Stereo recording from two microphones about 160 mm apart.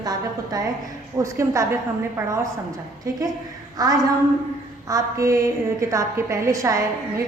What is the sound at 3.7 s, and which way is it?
A woman's voice, 20° right (ahead or behind).